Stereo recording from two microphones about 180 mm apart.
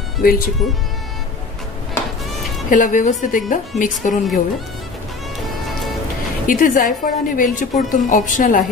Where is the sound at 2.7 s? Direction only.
45° left (ahead or behind).